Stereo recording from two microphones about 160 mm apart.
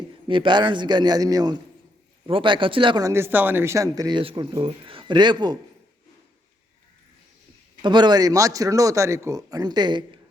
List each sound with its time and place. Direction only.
0.3 s a man's voice: 30° right (ahead or behind)
3.1 s speech: 15° right (ahead or behind)
4.2 s speech: 35° right (ahead or behind)
7.8 s a man's voice: 30° right (ahead or behind)